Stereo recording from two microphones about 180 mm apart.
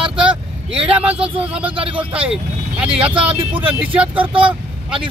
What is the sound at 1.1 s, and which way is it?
Speech, 30° right (ahead or behind).